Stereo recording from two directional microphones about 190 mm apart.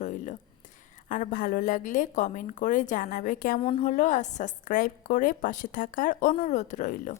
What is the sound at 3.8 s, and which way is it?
A woman's voice, 40° left (ahead or behind).